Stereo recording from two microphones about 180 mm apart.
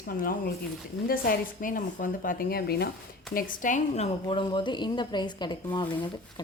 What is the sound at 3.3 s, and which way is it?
Speech, 50° left (ahead or behind).